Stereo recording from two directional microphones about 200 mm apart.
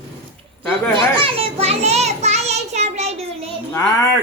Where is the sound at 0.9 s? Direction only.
25° right (ahead or behind).